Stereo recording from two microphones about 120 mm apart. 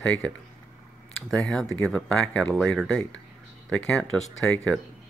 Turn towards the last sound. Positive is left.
turn(degrees=5)  # may be behind; listen again after turning